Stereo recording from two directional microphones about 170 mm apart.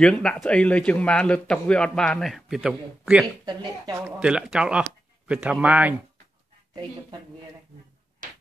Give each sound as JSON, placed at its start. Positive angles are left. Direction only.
{"t": 0.0, "sound": "a man's voice", "side_deg": 5}
{"t": 3.4, "sound": "speech", "side_deg": -25}
{"t": 4.0, "sound": "a man's voice", "side_deg": -5}
{"t": 6.7, "sound": "speech", "side_deg": -25}